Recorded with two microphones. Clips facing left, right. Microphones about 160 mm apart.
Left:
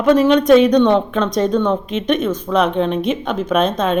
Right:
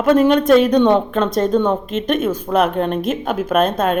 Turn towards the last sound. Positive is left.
turn(degrees=-5)  # may be behind; listen again after turning